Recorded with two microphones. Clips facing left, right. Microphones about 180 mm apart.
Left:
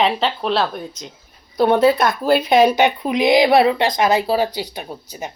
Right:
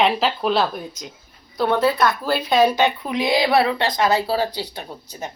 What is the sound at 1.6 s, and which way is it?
Speech, 20° left (ahead or behind).